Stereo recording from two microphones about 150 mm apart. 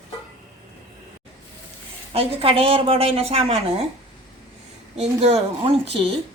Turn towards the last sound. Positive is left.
turn(degrees=-45)  # may be behind; listen again after turning